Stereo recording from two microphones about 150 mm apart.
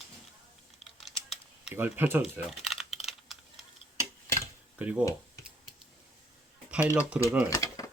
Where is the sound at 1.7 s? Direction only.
10° right (ahead or behind).